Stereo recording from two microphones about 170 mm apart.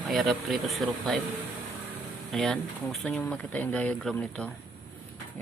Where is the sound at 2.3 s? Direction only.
Centre (ahead or behind).